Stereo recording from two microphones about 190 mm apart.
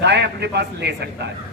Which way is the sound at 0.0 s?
65° right (ahead or behind).